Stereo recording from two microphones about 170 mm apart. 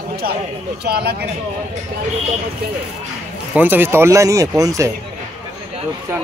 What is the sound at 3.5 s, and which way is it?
Speech, 10° right (ahead or behind).